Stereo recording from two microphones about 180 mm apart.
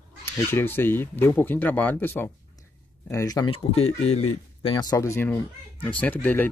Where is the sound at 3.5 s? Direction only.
35° left (ahead or behind).